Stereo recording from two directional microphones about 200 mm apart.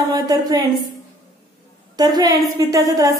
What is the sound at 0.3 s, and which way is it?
Speech, 20° right (ahead or behind).